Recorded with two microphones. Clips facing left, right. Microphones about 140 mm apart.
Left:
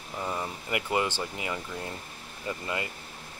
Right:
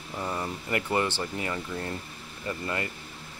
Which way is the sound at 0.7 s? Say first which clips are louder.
Right 1 dB; 15° left (ahead or behind).